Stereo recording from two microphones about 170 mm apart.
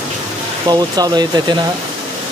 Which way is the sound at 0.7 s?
25° right (ahead or behind).